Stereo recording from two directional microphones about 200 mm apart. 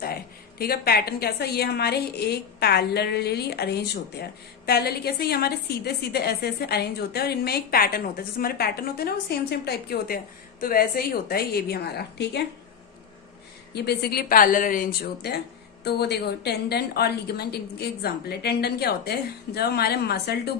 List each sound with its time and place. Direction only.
0.6 s a woman's voice: 50° left (ahead or behind)
13.7 s a woman's voice: 55° left (ahead or behind)